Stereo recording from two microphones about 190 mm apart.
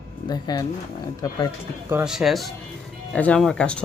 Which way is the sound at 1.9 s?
5° right (ahead or behind).